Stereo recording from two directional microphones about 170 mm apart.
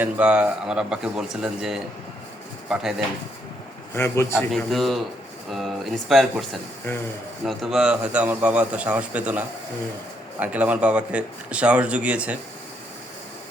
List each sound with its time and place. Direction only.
0.0 s a man's voice: 10° right (ahead or behind)
3.9 s speech: 15° left (ahead or behind)
4.5 s a man's voice: centre (ahead or behind)
10.4 s a man's voice: 10° right (ahead or behind)